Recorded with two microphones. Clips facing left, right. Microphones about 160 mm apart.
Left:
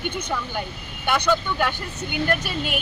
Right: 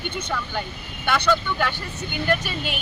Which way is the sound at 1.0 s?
10° left (ahead or behind).